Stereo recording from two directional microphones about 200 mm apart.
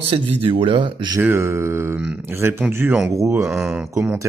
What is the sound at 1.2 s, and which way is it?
Speech, 10° right (ahead or behind).